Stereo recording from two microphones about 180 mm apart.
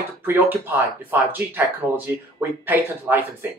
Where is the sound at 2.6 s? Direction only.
10° right (ahead or behind).